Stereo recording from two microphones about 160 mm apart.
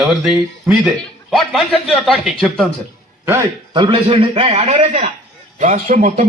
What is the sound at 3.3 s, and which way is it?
Speech, 20° right (ahead or behind).